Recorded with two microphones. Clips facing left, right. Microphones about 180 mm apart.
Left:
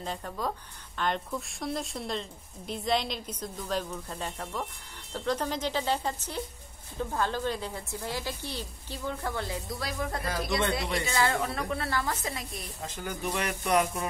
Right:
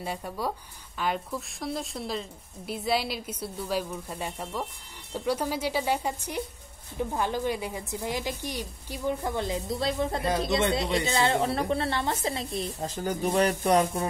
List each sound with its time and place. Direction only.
0.0 s a woman's voice: 10° right (ahead or behind); by 14.0 s 30° right (ahead or behind)